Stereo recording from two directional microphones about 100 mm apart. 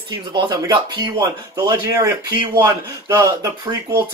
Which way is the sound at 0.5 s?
35° right (ahead or behind).